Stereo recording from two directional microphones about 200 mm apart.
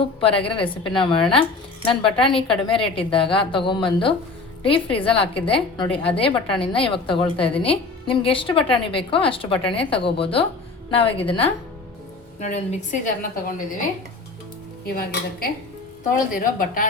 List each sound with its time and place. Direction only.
0.2 s a woman's voice: 30° left (ahead or behind)
14.8 s a woman's voice: 50° left (ahead or behind)